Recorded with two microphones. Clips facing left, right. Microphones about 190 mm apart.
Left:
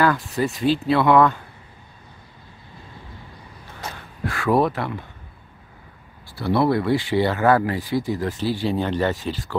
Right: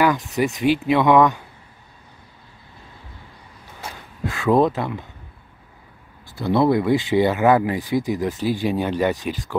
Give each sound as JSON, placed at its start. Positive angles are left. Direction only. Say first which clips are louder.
{"t": 0.0, "sound": "speech", "louder": "right 1 dB", "side_deg": -15}
{"t": 3.8, "sound": "a sound", "louder": "left 1 dB", "side_deg": -10}
{"t": 4.3, "sound": "speech", "louder": "right 2 dB", "side_deg": -20}
{"t": 6.3, "sound": "speech", "louder": "right 2 dB", "side_deg": -20}